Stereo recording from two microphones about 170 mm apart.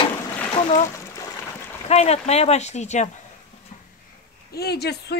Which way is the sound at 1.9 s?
40° left (ahead or behind).